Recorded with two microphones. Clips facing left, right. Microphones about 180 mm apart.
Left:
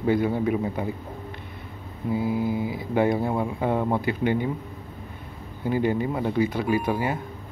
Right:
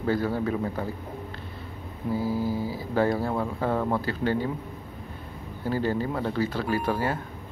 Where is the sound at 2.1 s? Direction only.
20° left (ahead or behind).